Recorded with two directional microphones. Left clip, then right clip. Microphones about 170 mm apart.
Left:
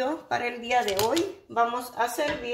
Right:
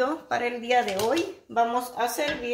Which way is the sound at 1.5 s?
35° right (ahead or behind).